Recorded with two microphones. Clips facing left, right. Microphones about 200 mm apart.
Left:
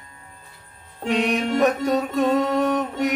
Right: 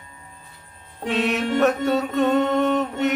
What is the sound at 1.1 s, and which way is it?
Music, 15° left (ahead or behind).